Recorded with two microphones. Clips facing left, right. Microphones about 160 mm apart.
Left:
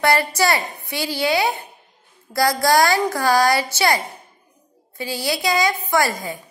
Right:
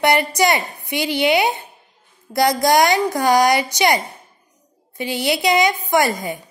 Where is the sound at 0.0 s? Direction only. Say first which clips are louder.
Right 2 dB; 20° right (ahead or behind).